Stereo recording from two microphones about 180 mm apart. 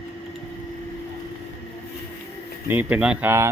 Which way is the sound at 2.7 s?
10° right (ahead or behind).